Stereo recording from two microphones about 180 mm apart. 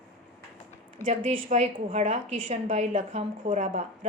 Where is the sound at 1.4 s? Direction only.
40° right (ahead or behind).